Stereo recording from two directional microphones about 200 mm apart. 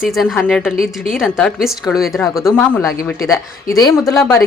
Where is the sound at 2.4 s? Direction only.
10° left (ahead or behind).